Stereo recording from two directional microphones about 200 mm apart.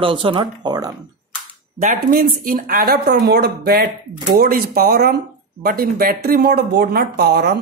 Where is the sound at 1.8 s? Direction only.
40° right (ahead or behind).